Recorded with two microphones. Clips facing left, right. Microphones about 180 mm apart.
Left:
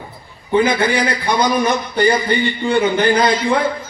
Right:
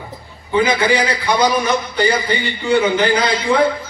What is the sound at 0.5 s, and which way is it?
A man's voice, 55° left (ahead or behind).